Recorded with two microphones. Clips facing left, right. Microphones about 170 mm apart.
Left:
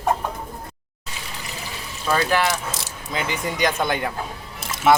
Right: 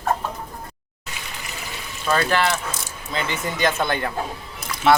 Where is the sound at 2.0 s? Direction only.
10° left (ahead or behind).